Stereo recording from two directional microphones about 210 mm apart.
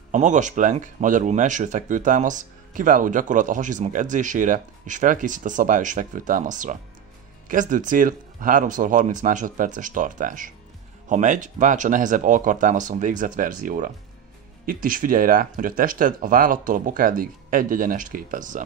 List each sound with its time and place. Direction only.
0.1 s speech: 35° right (ahead or behind)